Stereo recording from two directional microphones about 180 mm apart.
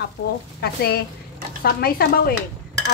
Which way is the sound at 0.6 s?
60° left (ahead or behind).